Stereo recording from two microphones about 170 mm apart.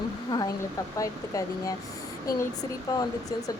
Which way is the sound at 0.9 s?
20° left (ahead or behind).